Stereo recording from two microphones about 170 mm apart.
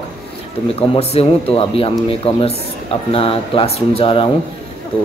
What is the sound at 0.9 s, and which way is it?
Speech, 35° left (ahead or behind).